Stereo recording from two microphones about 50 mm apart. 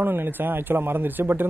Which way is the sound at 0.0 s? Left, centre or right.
Right.